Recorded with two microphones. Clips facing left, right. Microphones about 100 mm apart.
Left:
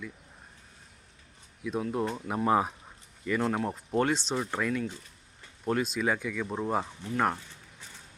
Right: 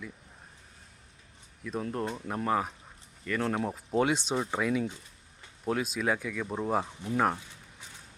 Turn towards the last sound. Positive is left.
turn(degrees=-5)  # may be behind; listen again after turning